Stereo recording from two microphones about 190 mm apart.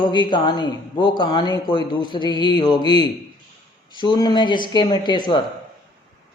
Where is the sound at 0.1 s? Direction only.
25° left (ahead or behind).